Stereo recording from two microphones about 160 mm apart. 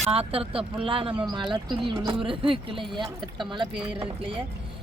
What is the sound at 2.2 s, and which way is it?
Speech, 35° right (ahead or behind).